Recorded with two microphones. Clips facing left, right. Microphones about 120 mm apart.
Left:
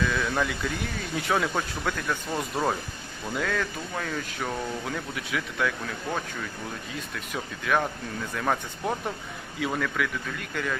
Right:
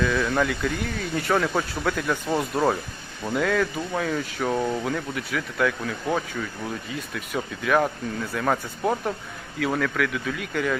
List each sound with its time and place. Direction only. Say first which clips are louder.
0.0 s speech: right 4 dB; centre (ahead or behind)